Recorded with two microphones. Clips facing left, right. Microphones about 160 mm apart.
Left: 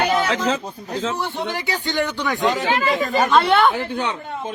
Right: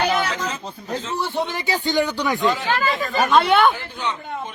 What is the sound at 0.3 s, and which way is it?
Speech, 90° left.